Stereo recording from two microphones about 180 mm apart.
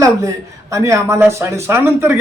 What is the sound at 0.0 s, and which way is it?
A man's voice, 15° right (ahead or behind).